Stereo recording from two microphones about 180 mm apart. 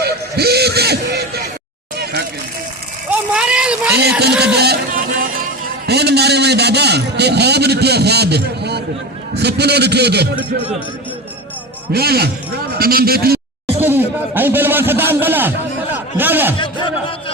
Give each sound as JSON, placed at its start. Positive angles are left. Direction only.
{"t": 0.0, "sound": "a sound", "side_deg": -60}
{"t": 3.1, "sound": "vehicle", "side_deg": -5}
{"t": 4.5, "sound": "music", "side_deg": -65}
{"t": 5.8, "sound": "a sound", "side_deg": -65}
{"t": 9.3, "sound": "a man's voice", "side_deg": -65}
{"t": 11.9, "sound": "a man's voice", "side_deg": -60}
{"t": 13.7, "sound": "a man's voice", "side_deg": -10}
{"t": 16.6, "sound": "speech", "side_deg": 25}